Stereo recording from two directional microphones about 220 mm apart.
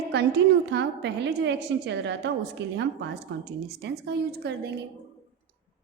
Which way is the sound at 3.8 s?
50° right (ahead or behind).